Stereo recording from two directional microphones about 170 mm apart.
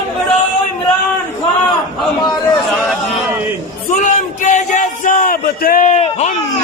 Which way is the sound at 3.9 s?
45° left (ahead or behind).